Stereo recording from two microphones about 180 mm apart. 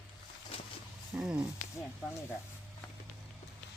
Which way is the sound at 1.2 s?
5° right (ahead or behind).